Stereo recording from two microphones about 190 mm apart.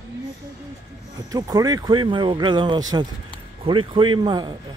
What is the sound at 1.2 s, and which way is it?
Speech, 20° right (ahead or behind).